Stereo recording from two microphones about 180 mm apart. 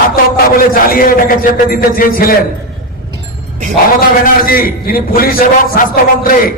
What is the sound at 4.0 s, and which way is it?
A man's voice, 50° left (ahead or behind).